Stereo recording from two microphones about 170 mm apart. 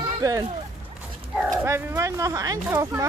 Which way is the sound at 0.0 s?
20° right (ahead or behind).